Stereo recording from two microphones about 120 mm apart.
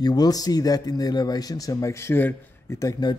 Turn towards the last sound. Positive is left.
turn(degrees=30)  # may be behind; listen again after turning